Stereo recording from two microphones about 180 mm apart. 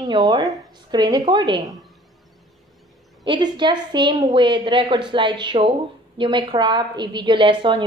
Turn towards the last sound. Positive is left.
turn(degrees=-25)  # may be behind; listen again after turning